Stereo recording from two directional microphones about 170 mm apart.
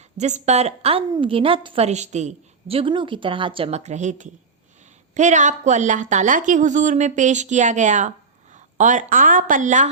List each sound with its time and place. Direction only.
0.2 s a woman's voice: 45° right (ahead or behind)